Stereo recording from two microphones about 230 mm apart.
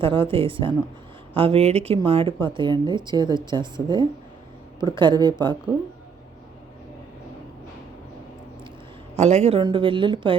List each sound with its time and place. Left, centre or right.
0.0 s speech: right
9.1 s speech: right